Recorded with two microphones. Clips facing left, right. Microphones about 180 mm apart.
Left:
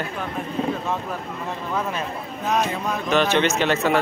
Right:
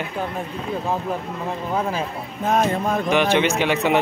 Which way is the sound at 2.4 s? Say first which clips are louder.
Right 4 dB; 50° right (ahead or behind).